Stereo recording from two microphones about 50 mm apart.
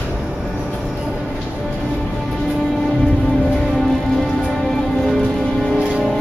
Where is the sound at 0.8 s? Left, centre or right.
Centre.